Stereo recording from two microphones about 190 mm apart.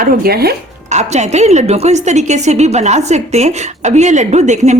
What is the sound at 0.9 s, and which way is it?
A woman's voice, 35° right (ahead or behind).